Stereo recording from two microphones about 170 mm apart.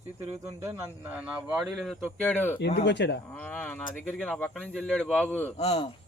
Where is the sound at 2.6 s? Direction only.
80° left.